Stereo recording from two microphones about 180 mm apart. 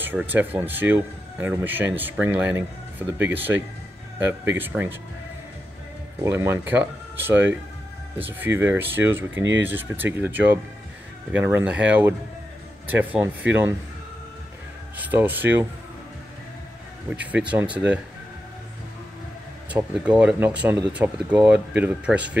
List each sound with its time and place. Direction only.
0.0 s speech: 10° right (ahead or behind)
6.2 s speech: 15° right (ahead or behind)
9.3 s speech: 90° right
9.6 s speech: 10° right (ahead or behind)
15.0 s speech: 10° right (ahead or behind)
17.1 s speech: 10° right (ahead or behind)
19.7 s speech: 5° right (ahead or behind)